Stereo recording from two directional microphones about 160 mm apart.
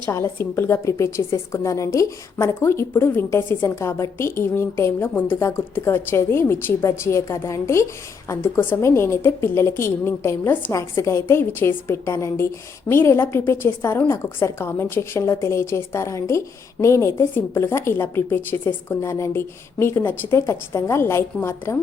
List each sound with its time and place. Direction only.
0.0 s a woman's voice: 15° left (ahead or behind)